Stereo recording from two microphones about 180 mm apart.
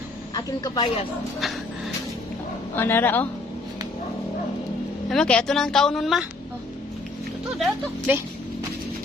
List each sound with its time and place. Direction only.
0.3 s speech: 20° left (ahead or behind)
2.7 s speech: 10° left (ahead or behind)
5.0 s a woman's voice: 5° left (ahead or behind)
7.6 s speech: 10° right (ahead or behind)